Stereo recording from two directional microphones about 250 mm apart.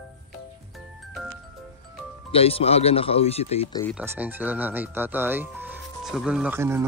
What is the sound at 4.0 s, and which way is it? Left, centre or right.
Speech, centre.